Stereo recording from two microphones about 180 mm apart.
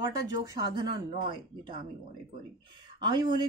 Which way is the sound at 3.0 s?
25° right (ahead or behind).